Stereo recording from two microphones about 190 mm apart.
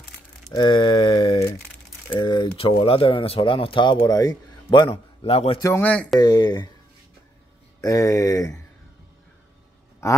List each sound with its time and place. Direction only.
0.5 s a sound: 25° left (ahead or behind)
2.1 s speech: 25° left (ahead or behind)
5.6 s speech: 10° left (ahead or behind)
6.1 s speech: 20° left (ahead or behind)
7.8 s speech: 20° left (ahead or behind)